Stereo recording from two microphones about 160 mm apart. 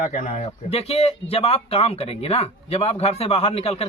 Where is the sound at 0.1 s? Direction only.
45° left (ahead or behind).